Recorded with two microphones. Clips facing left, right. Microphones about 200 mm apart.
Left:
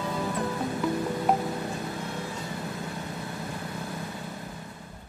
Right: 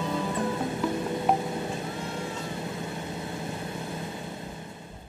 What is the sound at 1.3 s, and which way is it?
Cat, 20° right (ahead or behind).